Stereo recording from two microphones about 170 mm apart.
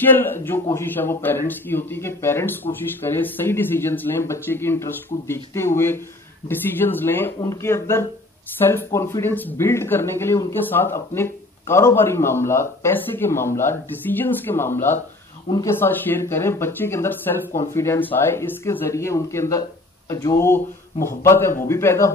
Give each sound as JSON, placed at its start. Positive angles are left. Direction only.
{"t": 0.0, "sound": "speech", "side_deg": 10}